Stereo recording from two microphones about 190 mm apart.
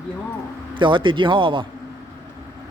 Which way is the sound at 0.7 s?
25° right (ahead or behind).